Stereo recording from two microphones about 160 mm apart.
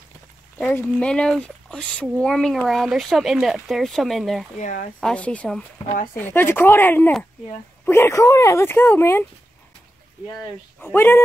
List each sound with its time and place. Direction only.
0.7 s speech: 10° left (ahead or behind)
4.6 s speech: 55° left (ahead or behind)
5.0 s speech: 10° left (ahead or behind)
10.8 s speech: 10° left (ahead or behind)